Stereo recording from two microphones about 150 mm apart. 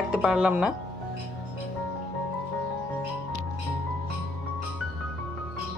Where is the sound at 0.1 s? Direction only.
5° right (ahead or behind).